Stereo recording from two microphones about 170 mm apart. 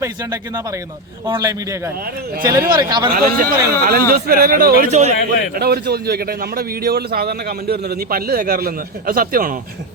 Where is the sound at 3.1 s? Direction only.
60° right (ahead or behind).